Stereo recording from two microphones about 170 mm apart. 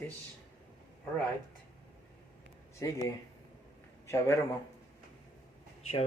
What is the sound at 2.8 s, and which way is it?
Speech, 20° left (ahead or behind).